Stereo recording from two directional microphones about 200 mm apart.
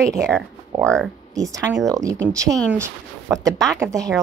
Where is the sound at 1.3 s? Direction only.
15° right (ahead or behind).